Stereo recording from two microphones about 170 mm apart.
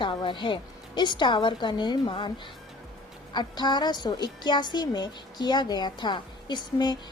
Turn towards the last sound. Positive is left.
turn(degrees=25)  # may be behind; listen again after turning